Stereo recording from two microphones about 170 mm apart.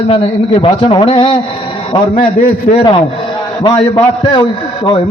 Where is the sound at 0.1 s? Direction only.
35° left (ahead or behind).